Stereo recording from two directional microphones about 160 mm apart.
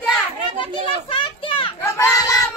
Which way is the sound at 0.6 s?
30° left (ahead or behind).